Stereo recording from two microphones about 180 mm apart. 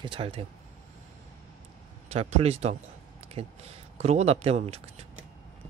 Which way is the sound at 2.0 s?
35° right (ahead or behind).